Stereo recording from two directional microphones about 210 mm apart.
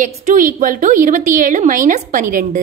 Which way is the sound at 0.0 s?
40° right (ahead or behind).